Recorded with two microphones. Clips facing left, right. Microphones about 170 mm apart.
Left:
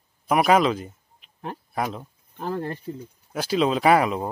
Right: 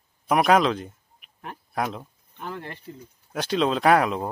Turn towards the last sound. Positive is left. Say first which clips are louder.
# left 1 dB
turn(degrees=0)  # may be behind; listen again after turning